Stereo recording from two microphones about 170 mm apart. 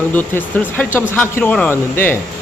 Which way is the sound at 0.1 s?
10° left (ahead or behind).